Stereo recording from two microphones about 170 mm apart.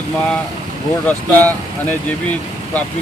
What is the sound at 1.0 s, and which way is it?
Speech, 10° left (ahead or behind).